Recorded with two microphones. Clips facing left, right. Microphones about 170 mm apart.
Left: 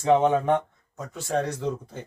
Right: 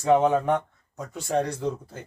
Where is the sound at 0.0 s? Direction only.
5° right (ahead or behind).